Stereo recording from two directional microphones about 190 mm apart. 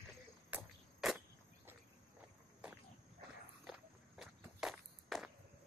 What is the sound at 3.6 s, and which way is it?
Walk, 5° right (ahead or behind).